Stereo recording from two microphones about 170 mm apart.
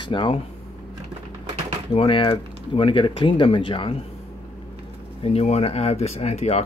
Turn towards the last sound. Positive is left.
turn(degrees=40)  # may be behind; listen again after turning